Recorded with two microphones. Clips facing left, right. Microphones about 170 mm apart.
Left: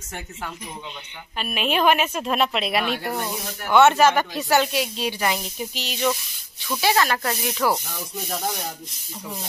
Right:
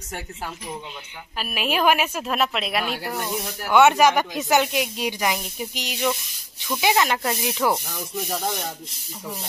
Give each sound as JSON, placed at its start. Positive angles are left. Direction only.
{"t": 1.4, "sound": "a woman's voice", "side_deg": -5}
{"t": 3.1, "sound": "speech", "side_deg": 15}
{"t": 3.6, "sound": "speech", "side_deg": -10}